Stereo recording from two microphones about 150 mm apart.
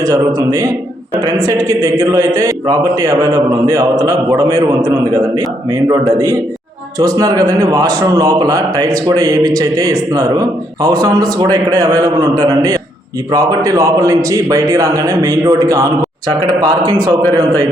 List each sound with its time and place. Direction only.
0.0 s a man's voice: 25° right (ahead or behind)